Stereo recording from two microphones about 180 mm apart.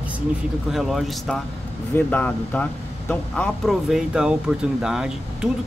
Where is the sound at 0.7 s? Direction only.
Centre (ahead or behind).